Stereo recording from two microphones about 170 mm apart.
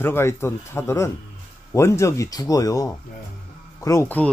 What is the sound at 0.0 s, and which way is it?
Speech, 15° left (ahead or behind).